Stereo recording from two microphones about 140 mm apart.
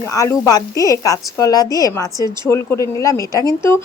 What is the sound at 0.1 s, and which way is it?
A woman's voice, 25° left (ahead or behind).